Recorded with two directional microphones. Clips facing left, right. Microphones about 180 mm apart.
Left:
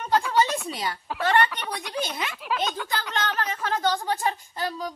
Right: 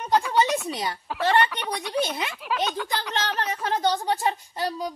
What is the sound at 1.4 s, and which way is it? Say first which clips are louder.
Speech: right 1 dB; centre (ahead or behind).